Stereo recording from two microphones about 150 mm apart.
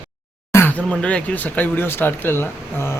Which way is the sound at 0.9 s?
10° left (ahead or behind).